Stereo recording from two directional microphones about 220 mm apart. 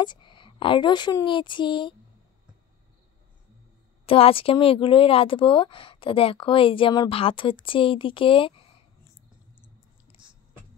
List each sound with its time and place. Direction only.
0.0 s speech: 20° left (ahead or behind)
4.0 s speech: 25° left (ahead or behind)